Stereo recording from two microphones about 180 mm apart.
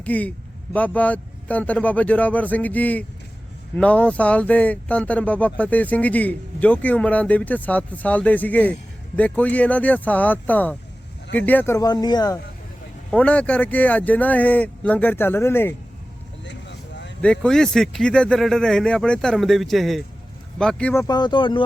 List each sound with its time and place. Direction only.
0.0 s a man's voice: 10° left (ahead or behind)
13.1 s a man's voice: 5° left (ahead or behind)
16.4 s vehicle: 80° left
17.2 s speech: 5° left (ahead or behind); by 21.6 s 25° left (ahead or behind)